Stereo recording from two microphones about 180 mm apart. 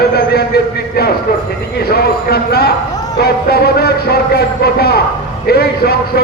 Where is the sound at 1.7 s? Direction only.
60° left (ahead or behind).